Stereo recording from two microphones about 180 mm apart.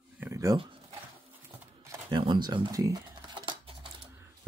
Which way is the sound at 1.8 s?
25° right (ahead or behind).